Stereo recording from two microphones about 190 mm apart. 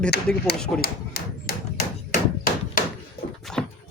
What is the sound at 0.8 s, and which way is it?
Tap, 55° left (ahead or behind).